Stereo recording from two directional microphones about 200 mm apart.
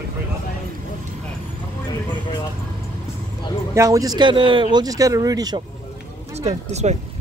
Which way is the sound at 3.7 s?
15° right (ahead or behind).